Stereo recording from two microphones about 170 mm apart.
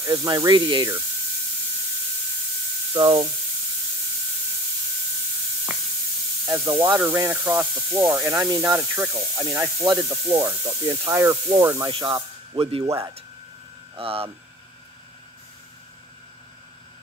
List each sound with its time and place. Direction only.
0.0 s speech: 20° right (ahead or behind)
2.9 s speech: 20° right (ahead or behind)
6.4 s speech: 15° right (ahead or behind)
11.9 s speech: 30° right (ahead or behind)
13.9 s speech: 35° right (ahead or behind)